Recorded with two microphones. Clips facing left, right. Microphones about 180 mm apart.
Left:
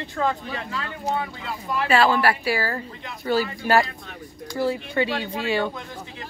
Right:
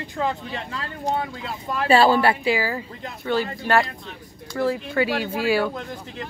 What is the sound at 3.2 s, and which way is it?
Speech, 5° left (ahead or behind).